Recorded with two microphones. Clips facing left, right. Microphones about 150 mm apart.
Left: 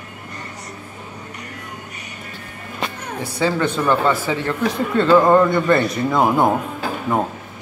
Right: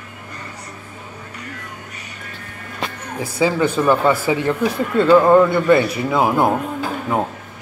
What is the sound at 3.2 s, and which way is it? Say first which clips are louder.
Speech: right 2 dB; 5° right (ahead or behind).